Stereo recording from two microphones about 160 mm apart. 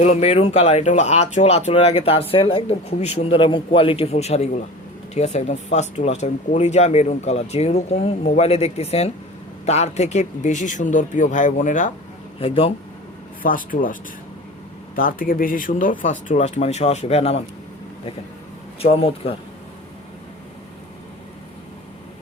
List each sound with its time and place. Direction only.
0.0 s speech: 45° left (ahead or behind)
12.4 s speech: 35° left (ahead or behind)
13.4 s speech: 60° left (ahead or behind)
14.9 s speech: 60° left (ahead or behind); by 17.4 s 40° left (ahead or behind)
18.8 s speech: 35° left (ahead or behind)